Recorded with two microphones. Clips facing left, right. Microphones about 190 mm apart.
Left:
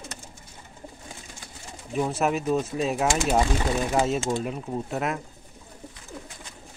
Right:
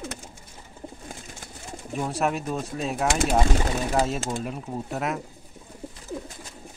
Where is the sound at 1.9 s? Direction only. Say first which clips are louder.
Left 2 dB; centre (ahead or behind).